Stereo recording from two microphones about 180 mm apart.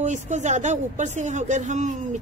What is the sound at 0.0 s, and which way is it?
A woman's voice, 40° right (ahead or behind).